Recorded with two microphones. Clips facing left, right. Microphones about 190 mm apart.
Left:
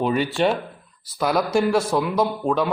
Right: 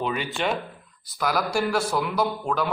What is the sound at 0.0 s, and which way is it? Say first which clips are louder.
Speech: left 6 dB; 40° left (ahead or behind).